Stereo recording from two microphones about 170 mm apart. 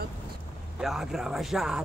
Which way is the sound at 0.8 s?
Centre (ahead or behind).